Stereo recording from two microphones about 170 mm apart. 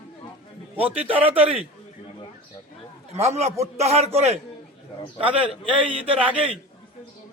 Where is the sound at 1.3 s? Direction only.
35° right (ahead or behind).